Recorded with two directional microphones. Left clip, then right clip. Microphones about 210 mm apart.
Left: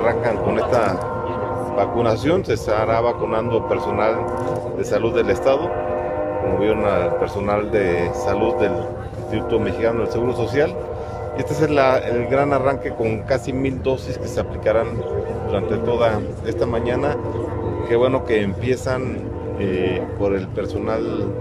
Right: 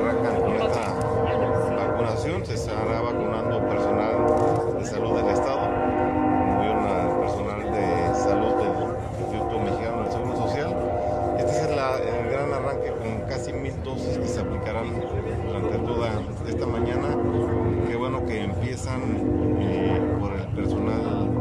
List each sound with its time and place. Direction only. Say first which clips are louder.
1.8 s speech: left 6 dB; 50° left (ahead or behind)
6.6 s speech: left 5 dB; 50° left (ahead or behind)
11.6 s speech: left 8 dB; 55° left (ahead or behind)
17.9 s speech: left 10 dB; 50° left (ahead or behind)